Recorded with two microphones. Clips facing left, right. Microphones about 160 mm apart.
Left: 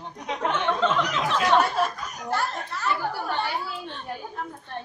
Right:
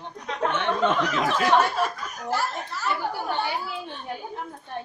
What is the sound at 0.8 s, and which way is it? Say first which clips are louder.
Speech: right 1 dB; 55° right (ahead or behind).